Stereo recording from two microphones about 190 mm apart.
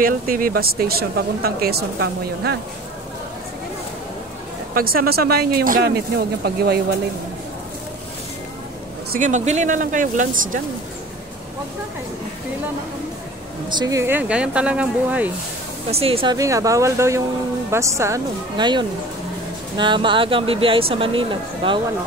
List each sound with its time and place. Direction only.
0.0 s speech: 50° right (ahead or behind)
4.7 s speech: 50° right (ahead or behind)
9.1 s speech: 40° right (ahead or behind)
13.7 s speech: 20° right (ahead or behind)
15.9 s speech: 30° right (ahead or behind)
16.3 s speech: 15° right (ahead or behind)